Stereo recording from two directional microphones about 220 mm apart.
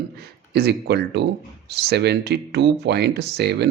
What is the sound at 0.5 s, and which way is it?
Speech, 50° right (ahead or behind).